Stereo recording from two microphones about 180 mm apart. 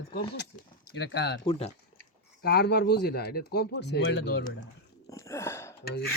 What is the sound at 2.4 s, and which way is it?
Speech, 60° left (ahead or behind).